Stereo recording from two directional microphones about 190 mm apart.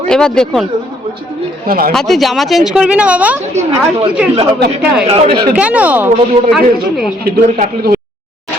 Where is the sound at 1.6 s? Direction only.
50° right (ahead or behind).